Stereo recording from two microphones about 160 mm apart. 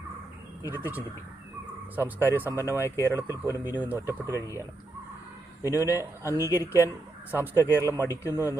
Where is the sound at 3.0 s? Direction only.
15° right (ahead or behind).